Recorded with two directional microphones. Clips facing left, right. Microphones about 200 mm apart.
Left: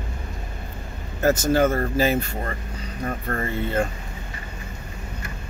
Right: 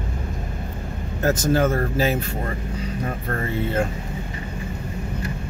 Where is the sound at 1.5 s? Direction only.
Centre (ahead or behind).